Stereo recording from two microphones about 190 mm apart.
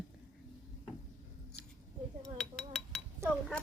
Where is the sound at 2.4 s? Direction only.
5° left (ahead or behind).